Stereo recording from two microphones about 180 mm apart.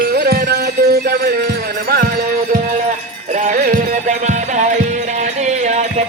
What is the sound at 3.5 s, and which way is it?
Music, 45° right (ahead or behind).